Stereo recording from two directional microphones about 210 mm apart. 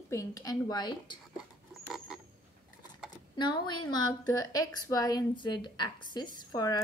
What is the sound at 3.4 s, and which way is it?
A woman's voice, 20° left (ahead or behind).